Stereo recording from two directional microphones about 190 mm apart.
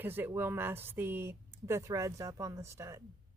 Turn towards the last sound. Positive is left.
turn(degrees=-15)  # may be behind; listen again after turning